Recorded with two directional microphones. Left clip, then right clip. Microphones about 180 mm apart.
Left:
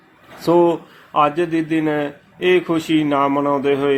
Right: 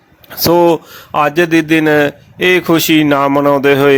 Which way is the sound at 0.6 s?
55° right (ahead or behind).